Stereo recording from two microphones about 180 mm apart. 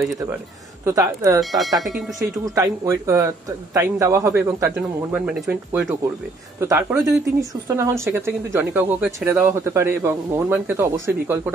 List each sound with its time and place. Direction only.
0.8 s speech: 15° right (ahead or behind)
1.4 s speech: centre (ahead or behind)
2.5 s speech: 15° right (ahead or behind)